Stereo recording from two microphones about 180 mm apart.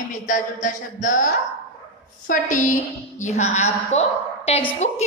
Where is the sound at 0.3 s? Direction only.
45° left (ahead or behind).